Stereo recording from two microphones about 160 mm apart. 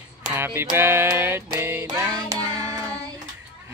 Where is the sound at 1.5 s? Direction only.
15° right (ahead or behind).